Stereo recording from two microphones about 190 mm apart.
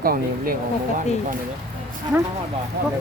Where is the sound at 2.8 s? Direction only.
55° right (ahead or behind).